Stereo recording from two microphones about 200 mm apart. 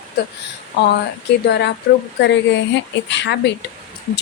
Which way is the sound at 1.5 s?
55° left (ahead or behind).